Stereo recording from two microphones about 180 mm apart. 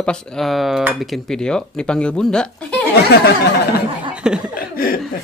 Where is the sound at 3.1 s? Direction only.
65° left (ahead or behind).